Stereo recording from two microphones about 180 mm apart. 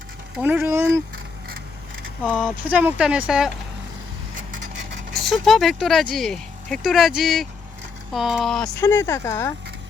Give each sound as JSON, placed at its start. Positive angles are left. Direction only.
{"t": 0.3, "sound": "speech", "side_deg": -10}
{"t": 2.6, "sound": "speech", "side_deg": -10}
{"t": 5.2, "sound": "speech", "side_deg": 0}
{"t": 8.8, "sound": "speech", "side_deg": 15}